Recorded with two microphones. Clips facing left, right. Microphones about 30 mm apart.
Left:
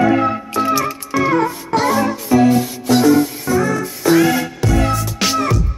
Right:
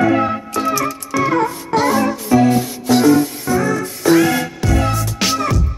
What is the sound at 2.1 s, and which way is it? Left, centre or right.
Music, centre.